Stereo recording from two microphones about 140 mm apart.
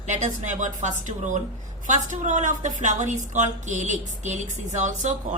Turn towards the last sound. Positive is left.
turn(degrees=-60)  # may be behind; listen again after turning